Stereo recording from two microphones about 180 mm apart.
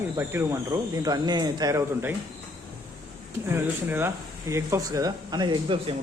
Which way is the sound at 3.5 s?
10° right (ahead or behind).